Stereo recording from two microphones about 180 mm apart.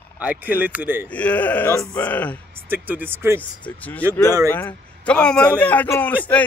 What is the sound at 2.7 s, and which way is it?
Speech, 10° right (ahead or behind).